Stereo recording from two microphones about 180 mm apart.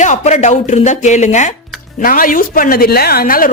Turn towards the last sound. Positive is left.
turn(degrees=50)  # may be behind; listen again after turning